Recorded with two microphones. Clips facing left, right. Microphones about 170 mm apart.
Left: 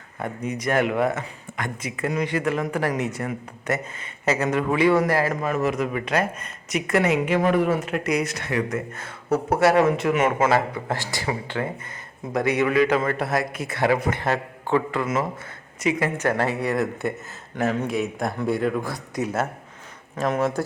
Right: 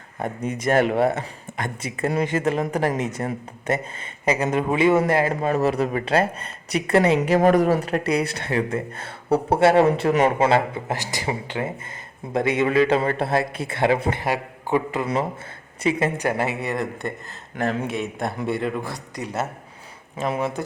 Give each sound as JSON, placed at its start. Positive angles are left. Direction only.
{"t": 0.5, "sound": "a man's voice", "side_deg": -30}
{"t": 15.0, "sound": "a man's voice", "side_deg": -30}
{"t": 16.1, "sound": "speech", "side_deg": -15}